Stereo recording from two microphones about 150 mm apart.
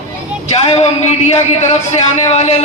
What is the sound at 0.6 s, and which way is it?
Speech, 45° left (ahead or behind).